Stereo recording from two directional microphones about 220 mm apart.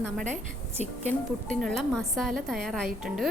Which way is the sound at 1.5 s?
Centre (ahead or behind).